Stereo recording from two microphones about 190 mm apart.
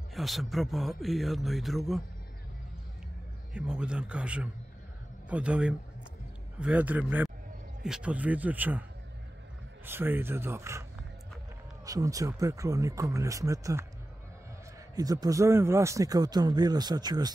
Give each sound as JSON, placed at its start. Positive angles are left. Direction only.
{"t": 0.1, "sound": "a man's voice", "side_deg": 0}
{"t": 3.5, "sound": "a man's voice", "side_deg": -5}
{"t": 9.8, "sound": "speech", "side_deg": -10}
{"t": 15.0, "sound": "speech", "side_deg": -20}